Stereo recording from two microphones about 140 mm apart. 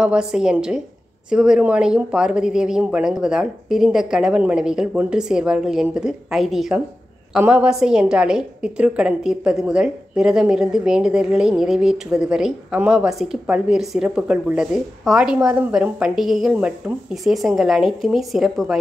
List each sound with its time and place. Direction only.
0.0 s a woman's voice: 5° right (ahead or behind)